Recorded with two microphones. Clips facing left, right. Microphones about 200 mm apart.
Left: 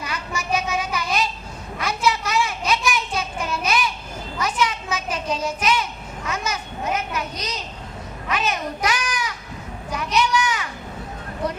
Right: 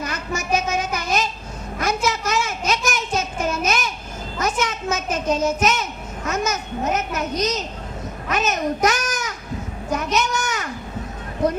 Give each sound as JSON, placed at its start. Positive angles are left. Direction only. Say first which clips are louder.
{"t": 0.0, "sound": "child singing", "louder": "right 3 dB", "side_deg": -45}
{"t": 8.3, "sound": "a child's voice", "louder": "right 3 dB", "side_deg": -45}
{"t": 9.9, "sound": "a sound", "louder": "even", "side_deg": -45}